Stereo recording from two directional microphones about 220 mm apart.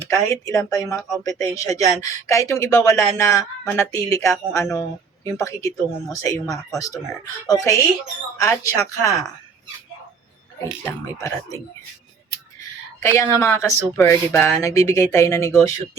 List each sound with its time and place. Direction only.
0.1 s speech: 15° left (ahead or behind)
10.8 s speech: 15° left (ahead or behind)